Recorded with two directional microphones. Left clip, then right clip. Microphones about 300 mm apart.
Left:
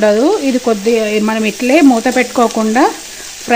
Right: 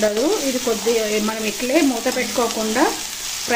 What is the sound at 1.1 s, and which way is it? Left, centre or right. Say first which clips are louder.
Speech: left 7 dB; left.